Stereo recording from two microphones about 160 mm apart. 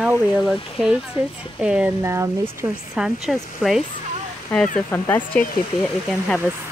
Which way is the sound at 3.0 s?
Centre (ahead or behind).